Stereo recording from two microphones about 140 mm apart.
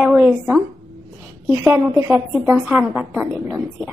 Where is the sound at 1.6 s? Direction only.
20° right (ahead or behind).